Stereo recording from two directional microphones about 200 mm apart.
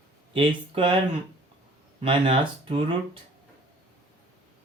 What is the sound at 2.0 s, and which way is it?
Speech, 25° right (ahead or behind).